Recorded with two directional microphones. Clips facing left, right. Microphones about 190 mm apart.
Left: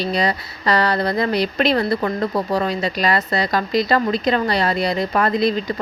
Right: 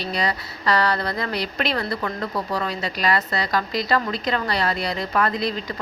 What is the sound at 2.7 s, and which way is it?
Speech, 20° left (ahead or behind).